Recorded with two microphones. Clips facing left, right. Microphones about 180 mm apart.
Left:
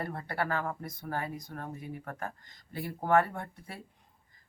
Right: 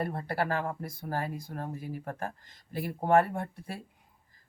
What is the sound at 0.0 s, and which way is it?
Speech, 30° right (ahead or behind).